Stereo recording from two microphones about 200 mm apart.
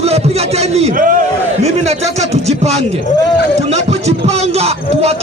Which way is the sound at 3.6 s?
35° right (ahead or behind).